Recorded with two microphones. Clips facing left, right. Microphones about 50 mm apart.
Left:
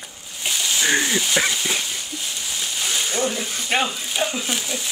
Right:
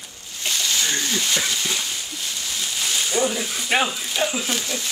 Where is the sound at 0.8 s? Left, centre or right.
Left.